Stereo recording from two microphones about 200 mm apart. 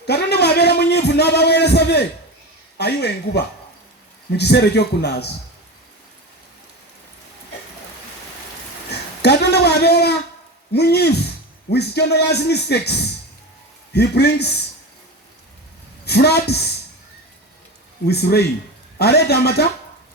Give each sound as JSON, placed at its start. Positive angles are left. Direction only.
{"t": 0.0, "sound": "a sound", "side_deg": 55}
{"t": 2.7, "sound": "a man's voice", "side_deg": 55}
{"t": 8.9, "sound": "a man's voice", "side_deg": 55}
{"t": 16.0, "sound": "a woman's voice", "side_deg": 55}
{"t": 18.1, "sound": "a man's voice", "side_deg": 55}